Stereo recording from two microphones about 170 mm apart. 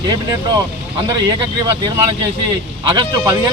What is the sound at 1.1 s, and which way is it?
Speech, 20° right (ahead or behind).